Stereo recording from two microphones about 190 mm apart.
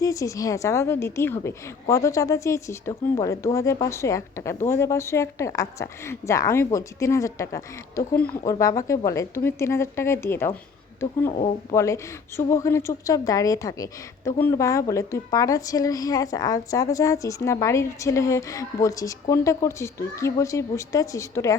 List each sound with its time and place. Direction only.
0.0 s a woman's voice: 15° left (ahead or behind)
11.7 s a woman's voice: 15° left (ahead or behind)